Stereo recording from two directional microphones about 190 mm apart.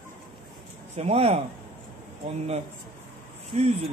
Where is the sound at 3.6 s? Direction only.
30° right (ahead or behind).